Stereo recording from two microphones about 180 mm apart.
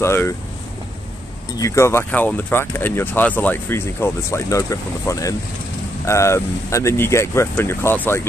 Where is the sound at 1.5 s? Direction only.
15° left (ahead or behind).